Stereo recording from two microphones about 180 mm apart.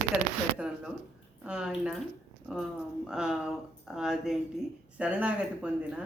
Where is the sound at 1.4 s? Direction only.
5° right (ahead or behind).